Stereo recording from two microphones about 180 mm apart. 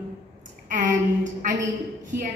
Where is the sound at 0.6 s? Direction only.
45° right (ahead or behind).